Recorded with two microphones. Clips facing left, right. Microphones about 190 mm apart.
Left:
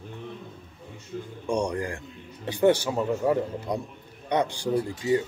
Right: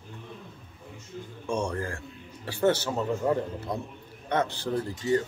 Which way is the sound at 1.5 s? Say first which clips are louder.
Left 3 dB; 15° left (ahead or behind).